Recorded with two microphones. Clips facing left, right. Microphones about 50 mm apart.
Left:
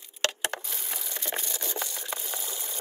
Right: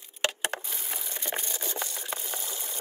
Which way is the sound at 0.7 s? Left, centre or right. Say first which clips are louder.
Even; centre.